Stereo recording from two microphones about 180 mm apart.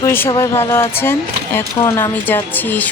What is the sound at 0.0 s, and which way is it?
Speech, 10° left (ahead or behind).